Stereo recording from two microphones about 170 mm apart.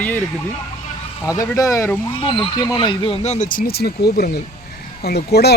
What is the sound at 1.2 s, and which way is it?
Speech, 20° left (ahead or behind).